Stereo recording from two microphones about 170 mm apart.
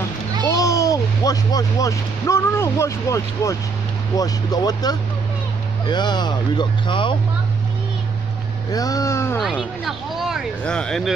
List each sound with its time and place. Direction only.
0.5 s speech: 20° left (ahead or behind)
8.7 s speech: 20° left (ahead or behind)
9.4 s speech: centre (ahead or behind)